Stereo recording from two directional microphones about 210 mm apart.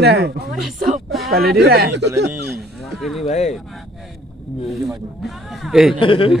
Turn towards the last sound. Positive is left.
turn(degrees=25)  # may be behind; listen again after turning